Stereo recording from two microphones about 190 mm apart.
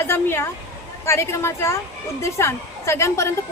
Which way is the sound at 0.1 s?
15° left (ahead or behind).